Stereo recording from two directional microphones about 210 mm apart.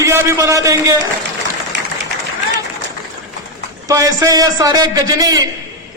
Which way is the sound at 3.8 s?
15° right (ahead or behind).